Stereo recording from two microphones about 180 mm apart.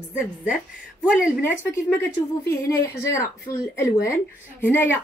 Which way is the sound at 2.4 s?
15° left (ahead or behind).